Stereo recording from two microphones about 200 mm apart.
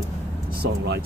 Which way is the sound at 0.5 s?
55° right (ahead or behind).